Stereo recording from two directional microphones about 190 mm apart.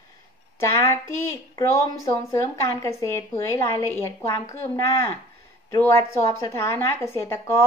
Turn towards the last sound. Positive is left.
turn(degrees=15)  # may be behind; listen again after turning